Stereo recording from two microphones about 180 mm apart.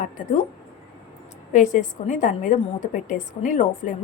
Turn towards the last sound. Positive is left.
turn(degrees=45)  # may be behind; listen again after turning